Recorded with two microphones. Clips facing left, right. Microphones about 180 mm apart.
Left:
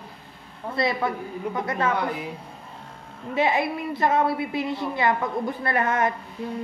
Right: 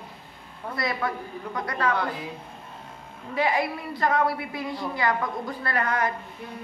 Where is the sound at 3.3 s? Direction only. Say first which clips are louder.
Left 2 dB; 25° left (ahead or behind).